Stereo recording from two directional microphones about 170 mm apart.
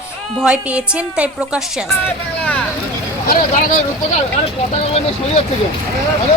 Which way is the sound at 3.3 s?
50° left (ahead or behind).